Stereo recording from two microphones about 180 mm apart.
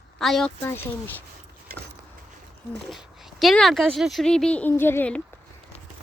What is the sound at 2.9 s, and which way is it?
Speech, centre (ahead or behind).